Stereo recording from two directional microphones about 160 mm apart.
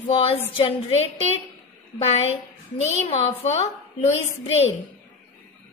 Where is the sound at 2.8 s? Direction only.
45° left (ahead or behind).